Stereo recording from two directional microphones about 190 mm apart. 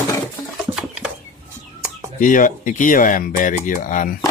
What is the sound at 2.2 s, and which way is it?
Speech, 45° left (ahead or behind).